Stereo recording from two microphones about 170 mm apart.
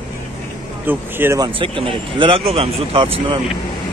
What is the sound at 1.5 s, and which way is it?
Speech, 30° right (ahead or behind).